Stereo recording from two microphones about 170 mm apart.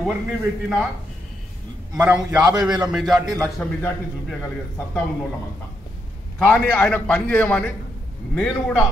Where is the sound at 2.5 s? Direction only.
20° right (ahead or behind).